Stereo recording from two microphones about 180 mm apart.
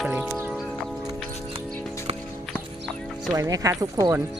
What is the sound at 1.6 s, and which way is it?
Music, 10° left (ahead or behind).